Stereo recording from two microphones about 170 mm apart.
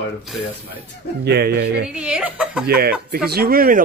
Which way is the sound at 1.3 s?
70° right (ahead or behind).